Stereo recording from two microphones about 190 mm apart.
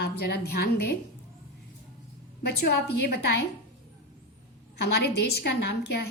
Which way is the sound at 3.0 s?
60° left (ahead or behind).